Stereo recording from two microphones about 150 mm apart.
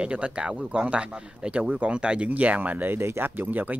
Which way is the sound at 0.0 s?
5° right (ahead or behind).